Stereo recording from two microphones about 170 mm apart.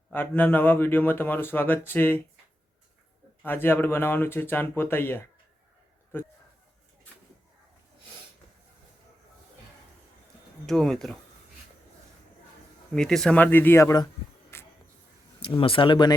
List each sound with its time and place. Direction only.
0.1 s speech: 10° left (ahead or behind)
3.4 s speech: 10° left (ahead or behind)
10.7 s speech: 5° left (ahead or behind)
12.9 s speech: 5° left (ahead or behind); by 14.1 s 20° left (ahead or behind)
14.5 s music: 15° left (ahead or behind)
15.4 s speech: 30° left (ahead or behind)